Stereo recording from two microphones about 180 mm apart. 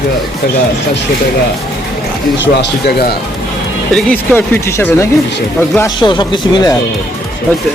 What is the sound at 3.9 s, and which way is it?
Speech, 10° left (ahead or behind).